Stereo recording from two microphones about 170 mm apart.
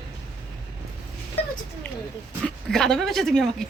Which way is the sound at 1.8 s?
5° left (ahead or behind).